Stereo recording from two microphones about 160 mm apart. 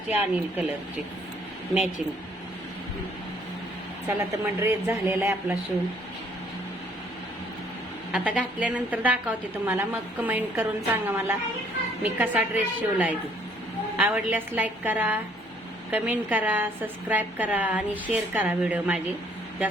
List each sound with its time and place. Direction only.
0.1 s a woman's voice: 10° right (ahead or behind)
4.2 s a woman's voice: 15° right (ahead or behind)
8.1 s a woman's voice: 10° right (ahead or behind)